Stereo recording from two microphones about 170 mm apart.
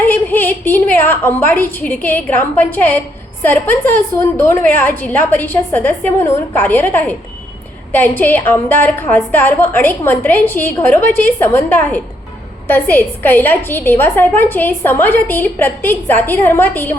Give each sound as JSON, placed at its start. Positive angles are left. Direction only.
{"t": 0.0, "sound": "a woman's voice", "side_deg": 10}